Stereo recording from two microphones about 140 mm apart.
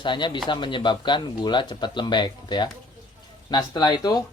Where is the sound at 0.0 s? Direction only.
35° left (ahead or behind).